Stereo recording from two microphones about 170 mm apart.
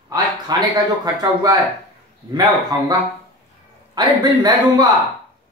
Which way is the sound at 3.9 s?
25° right (ahead or behind).